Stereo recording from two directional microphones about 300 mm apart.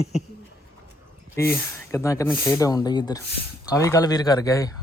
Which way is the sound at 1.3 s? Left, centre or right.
Centre.